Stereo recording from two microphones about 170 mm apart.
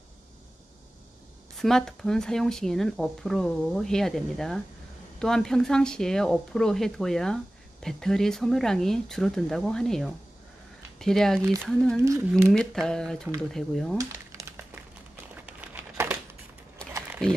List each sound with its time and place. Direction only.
1.6 s speech: 5° left (ahead or behind)
12.0 s speech: 15° right (ahead or behind)
12.5 s speech: 5° left (ahead or behind)
13.9 s crumpling: 15° right (ahead or behind)
17.2 s speech: 5° left (ahead or behind)